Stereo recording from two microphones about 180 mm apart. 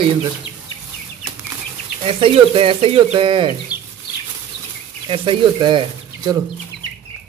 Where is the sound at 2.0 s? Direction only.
30° right (ahead or behind).